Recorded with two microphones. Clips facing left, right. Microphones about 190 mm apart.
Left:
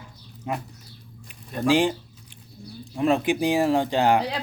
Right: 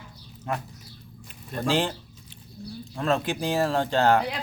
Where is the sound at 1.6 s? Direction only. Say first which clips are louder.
Left 5 dB; 15° left (ahead or behind).